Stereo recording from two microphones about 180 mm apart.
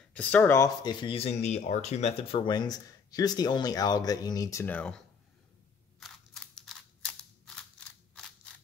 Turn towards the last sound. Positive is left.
turn(degrees=0)  # may be behind; listen again after turning